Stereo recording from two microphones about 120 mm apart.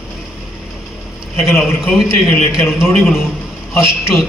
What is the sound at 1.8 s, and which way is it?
Speech, 5° right (ahead or behind).